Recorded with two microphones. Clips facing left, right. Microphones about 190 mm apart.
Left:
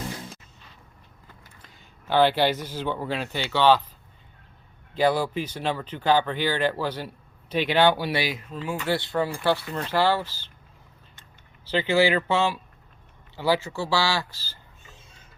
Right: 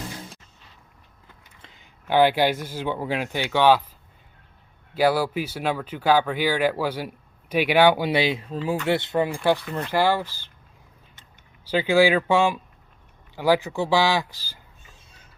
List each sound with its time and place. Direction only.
1.6 s speech: 15° right (ahead or behind)
4.9 s speech: 10° right (ahead or behind); by 8.8 s 35° right (ahead or behind)
8.9 s speech: 20° right (ahead or behind)
11.6 s speech: 10° right (ahead or behind)